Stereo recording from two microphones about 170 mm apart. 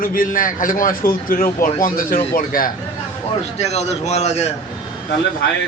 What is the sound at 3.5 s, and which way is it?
Speech, 40° left (ahead or behind).